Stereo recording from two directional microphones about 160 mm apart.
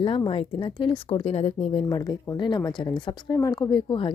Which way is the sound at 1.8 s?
25° left (ahead or behind).